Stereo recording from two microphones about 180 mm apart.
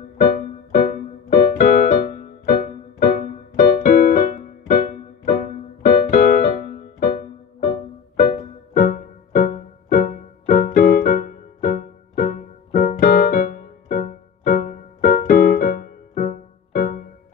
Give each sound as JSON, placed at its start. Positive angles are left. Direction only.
{"t": 0.2, "sound": "music", "side_deg": 50}
{"t": 8.7, "sound": "music", "side_deg": 50}